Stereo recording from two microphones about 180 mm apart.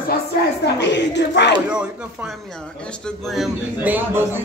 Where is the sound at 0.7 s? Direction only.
75° left (ahead or behind).